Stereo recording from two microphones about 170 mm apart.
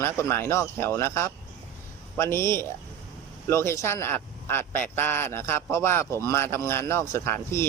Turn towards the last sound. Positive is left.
turn(degrees=15)  # may be behind; listen again after turning